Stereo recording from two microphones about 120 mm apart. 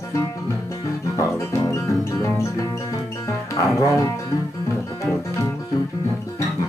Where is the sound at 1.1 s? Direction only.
25° left (ahead or behind).